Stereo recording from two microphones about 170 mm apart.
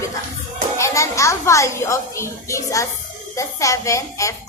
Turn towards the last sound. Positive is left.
turn(degrees=20)  # may be behind; listen again after turning